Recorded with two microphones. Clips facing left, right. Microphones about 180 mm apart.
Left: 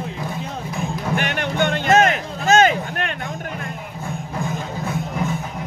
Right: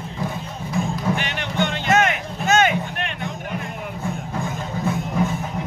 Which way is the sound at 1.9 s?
35° left (ahead or behind).